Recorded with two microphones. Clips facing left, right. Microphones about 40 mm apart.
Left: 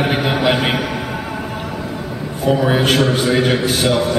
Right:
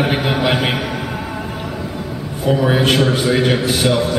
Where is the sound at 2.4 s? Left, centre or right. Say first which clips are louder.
Even; centre.